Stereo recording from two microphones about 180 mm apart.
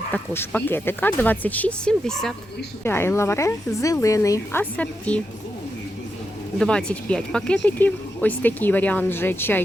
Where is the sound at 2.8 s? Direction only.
15° left (ahead or behind).